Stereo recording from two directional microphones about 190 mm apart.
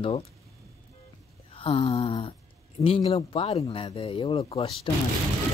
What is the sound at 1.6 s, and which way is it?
Speech, 30° left (ahead or behind).